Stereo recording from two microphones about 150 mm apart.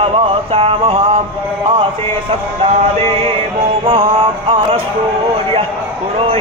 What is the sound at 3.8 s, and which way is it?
Speech, 40° right (ahead or behind).